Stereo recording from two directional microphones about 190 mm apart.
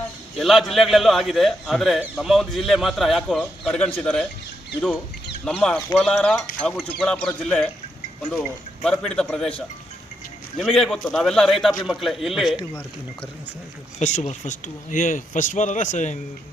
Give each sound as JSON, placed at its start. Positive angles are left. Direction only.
{"t": 0.3, "sound": "a man's voice", "side_deg": 0}
{"t": 5.5, "sound": "a man's voice", "side_deg": 5}
{"t": 10.6, "sound": "a man's voice", "side_deg": 0}
{"t": 14.0, "sound": "speech", "side_deg": 35}